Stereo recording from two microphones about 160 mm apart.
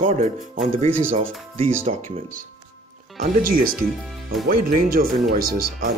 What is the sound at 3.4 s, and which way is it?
Speech, 60° right (ahead or behind).